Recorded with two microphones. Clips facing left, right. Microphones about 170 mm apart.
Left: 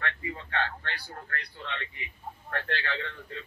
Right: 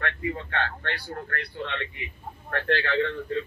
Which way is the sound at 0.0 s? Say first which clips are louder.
Right 6 dB; 55° right (ahead or behind).